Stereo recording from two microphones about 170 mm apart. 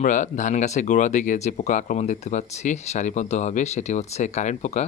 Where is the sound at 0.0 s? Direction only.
50° left (ahead or behind).